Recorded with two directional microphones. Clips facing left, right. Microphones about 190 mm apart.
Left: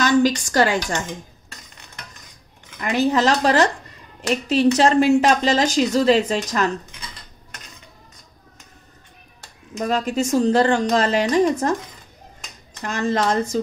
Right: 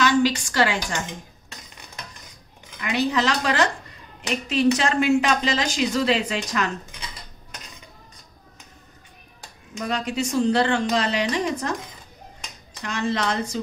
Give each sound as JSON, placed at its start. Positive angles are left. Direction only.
{"t": 0.0, "sound": "a woman's voice", "side_deg": 45}
{"t": 2.8, "sound": "a woman's voice", "side_deg": 45}
{"t": 4.7, "sound": "a woman's voice", "side_deg": 40}
{"t": 9.8, "sound": "a woman's voice", "side_deg": 40}
{"t": 12.8, "sound": "a woman's voice", "side_deg": 45}